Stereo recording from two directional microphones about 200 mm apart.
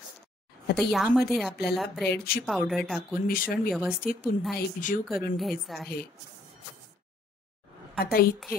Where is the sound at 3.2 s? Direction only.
45° left (ahead or behind).